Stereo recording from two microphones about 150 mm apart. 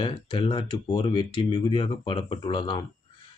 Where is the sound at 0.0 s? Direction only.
35° left (ahead or behind).